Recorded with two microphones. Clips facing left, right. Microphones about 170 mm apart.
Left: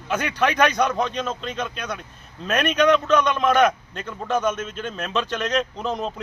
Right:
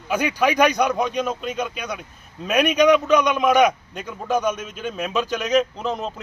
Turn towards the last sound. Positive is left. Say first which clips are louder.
# even
turn(degrees=0)  # may be behind; listen again after turning